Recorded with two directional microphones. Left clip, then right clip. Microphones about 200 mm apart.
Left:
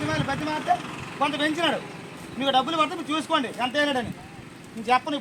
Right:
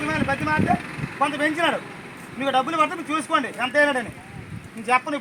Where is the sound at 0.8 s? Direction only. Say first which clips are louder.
Right 2 dB; 55° left (ahead or behind).